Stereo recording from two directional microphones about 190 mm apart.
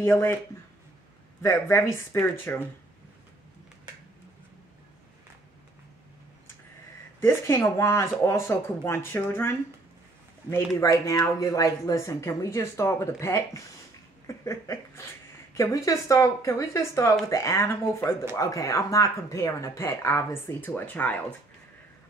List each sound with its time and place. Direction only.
0.0 s speech: 10° left (ahead or behind)
1.4 s speech: 15° left (ahead or behind)
7.2 s speech: 15° left (ahead or behind)
10.8 s speech: 15° left (ahead or behind)
14.2 s a sound: 15° left (ahead or behind)
15.5 s speech: 15° left (ahead or behind)